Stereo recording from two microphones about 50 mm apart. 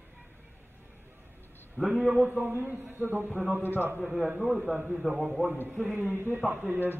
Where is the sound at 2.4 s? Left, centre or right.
Right.